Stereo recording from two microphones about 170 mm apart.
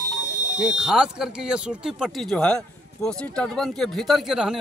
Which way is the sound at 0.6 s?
5° right (ahead or behind).